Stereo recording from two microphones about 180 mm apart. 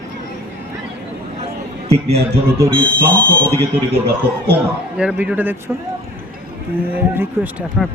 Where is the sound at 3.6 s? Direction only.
65° right (ahead or behind).